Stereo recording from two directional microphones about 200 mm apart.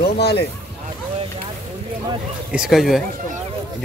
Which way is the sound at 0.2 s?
55° left (ahead or behind).